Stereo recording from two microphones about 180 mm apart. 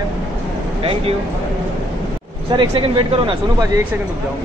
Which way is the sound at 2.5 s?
30° right (ahead or behind).